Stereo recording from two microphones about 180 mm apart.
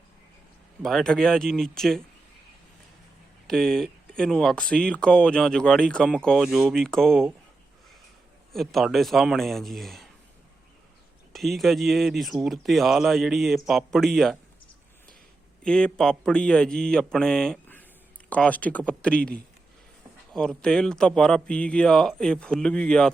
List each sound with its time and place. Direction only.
0.8 s speech: centre (ahead or behind)
3.4 s speech: centre (ahead or behind)
8.5 s speech: centre (ahead or behind)
11.3 s speech: centre (ahead or behind)
15.6 s speech: 5° left (ahead or behind)
20.3 s speech: 5° left (ahead or behind)